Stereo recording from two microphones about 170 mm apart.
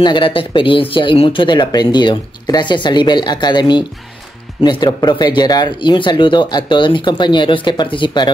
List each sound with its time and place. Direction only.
0.0 s speech: 30° left (ahead or behind)